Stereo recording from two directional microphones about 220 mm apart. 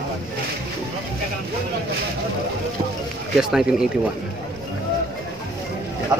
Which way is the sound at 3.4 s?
5° right (ahead or behind).